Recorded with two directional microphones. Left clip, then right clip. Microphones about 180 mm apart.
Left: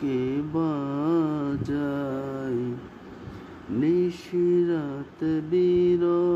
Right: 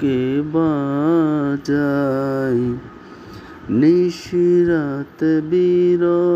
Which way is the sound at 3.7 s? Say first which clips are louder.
Right 9 dB; 30° right (ahead or behind).